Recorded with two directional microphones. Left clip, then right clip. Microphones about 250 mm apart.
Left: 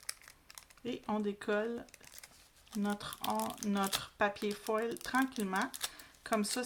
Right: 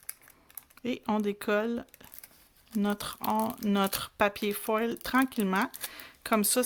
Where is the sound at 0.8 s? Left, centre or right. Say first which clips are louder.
Right 6 dB; right.